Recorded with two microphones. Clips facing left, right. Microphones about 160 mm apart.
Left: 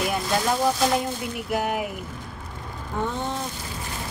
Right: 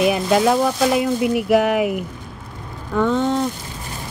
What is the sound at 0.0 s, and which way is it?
Speech, 90° right.